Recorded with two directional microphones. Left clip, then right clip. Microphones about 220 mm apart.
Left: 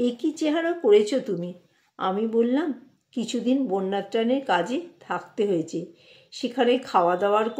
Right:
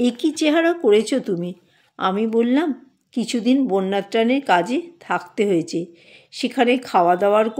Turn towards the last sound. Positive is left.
turn(degrees=-45)  # may be behind; listen again after turning